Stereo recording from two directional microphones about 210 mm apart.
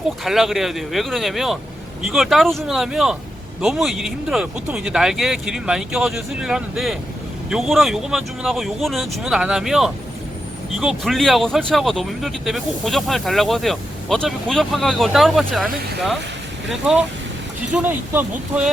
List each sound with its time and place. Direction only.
0.3 s speech: centre (ahead or behind)
17.8 s speech: 10° right (ahead or behind)